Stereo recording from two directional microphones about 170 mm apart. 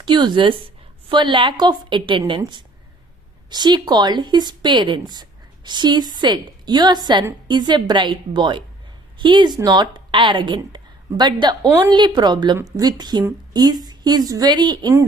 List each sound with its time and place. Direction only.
0.0 s a woman's voice: 25° right (ahead or behind)